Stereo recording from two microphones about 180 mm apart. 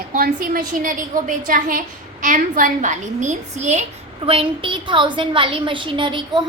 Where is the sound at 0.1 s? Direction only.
50° right (ahead or behind).